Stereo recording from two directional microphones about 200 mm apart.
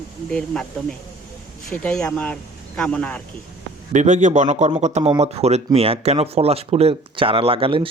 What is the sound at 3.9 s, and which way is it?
A man's voice, 35° right (ahead or behind).